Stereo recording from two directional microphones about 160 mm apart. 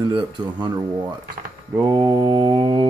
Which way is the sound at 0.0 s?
25° right (ahead or behind).